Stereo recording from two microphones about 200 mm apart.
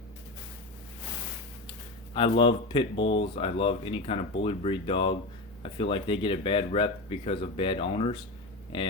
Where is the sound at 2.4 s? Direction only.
25° left (ahead or behind).